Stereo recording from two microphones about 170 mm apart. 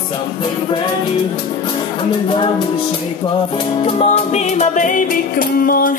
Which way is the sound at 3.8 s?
35° left (ahead or behind).